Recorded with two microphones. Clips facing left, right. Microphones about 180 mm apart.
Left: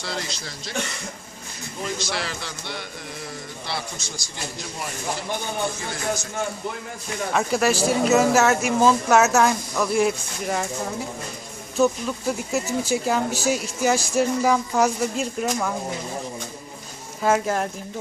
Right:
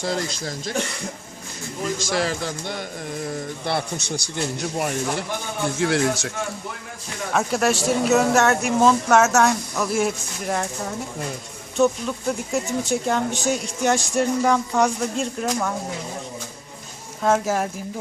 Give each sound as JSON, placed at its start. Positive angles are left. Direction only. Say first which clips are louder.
{"t": 0.0, "sound": "a man's voice", "louder": "right 6 dB", "side_deg": -45}
{"t": 2.0, "sound": "a man's voice", "louder": "right 6 dB", "side_deg": -45}
{"t": 5.8, "sound": "a man's voice", "louder": "right 7 dB", "side_deg": -75}
{"t": 7.3, "sound": "speech", "louder": "even", "side_deg": 0}
{"t": 11.8, "sound": "speech", "louder": "right 1 dB", "side_deg": 0}
{"t": 17.2, "sound": "speech", "louder": "right 1 dB", "side_deg": 0}